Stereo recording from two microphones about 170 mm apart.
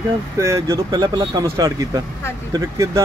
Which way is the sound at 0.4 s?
15° right (ahead or behind).